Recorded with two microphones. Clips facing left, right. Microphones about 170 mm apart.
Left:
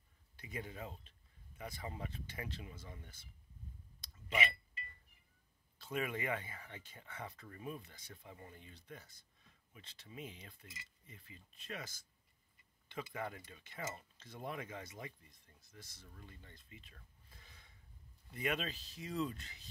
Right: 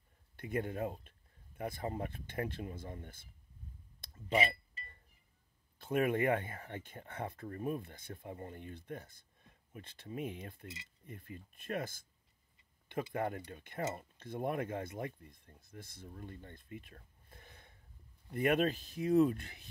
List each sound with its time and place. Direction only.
0.4 s speech: 55° right (ahead or behind)
4.3 s speech: 35° right (ahead or behind)
5.8 s speech: 55° right (ahead or behind)
13.1 s speech: 55° right (ahead or behind)